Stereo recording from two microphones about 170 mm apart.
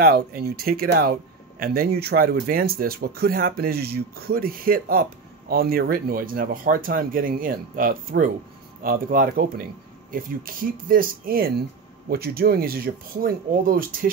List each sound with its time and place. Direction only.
0.0 s speech: 65° right (ahead or behind)